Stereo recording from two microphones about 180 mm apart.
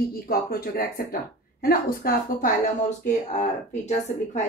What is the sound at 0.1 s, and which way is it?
Speech, 55° left (ahead or behind).